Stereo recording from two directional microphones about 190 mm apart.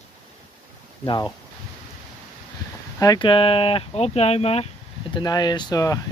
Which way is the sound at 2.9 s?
20° left (ahead or behind).